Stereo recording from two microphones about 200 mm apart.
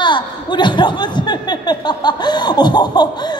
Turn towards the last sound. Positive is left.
turn(degrees=20)  # may be behind; listen again after turning